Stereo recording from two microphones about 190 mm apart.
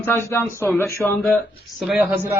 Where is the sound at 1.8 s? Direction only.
5° right (ahead or behind).